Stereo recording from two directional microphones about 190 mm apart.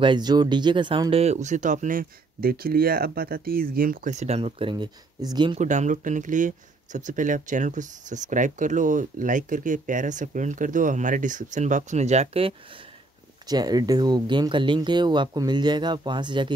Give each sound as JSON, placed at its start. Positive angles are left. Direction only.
{"t": 0.0, "sound": "speech", "side_deg": -25}
{"t": 5.6, "sound": "speech", "side_deg": -40}
{"t": 13.5, "sound": "speech", "side_deg": -20}